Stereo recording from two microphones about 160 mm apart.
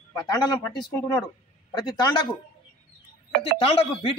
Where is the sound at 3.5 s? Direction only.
35° left (ahead or behind).